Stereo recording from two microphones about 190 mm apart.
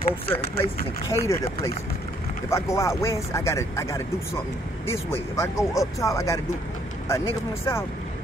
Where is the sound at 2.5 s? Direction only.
15° left (ahead or behind).